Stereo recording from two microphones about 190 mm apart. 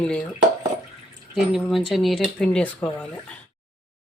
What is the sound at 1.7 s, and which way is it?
Speech, centre (ahead or behind).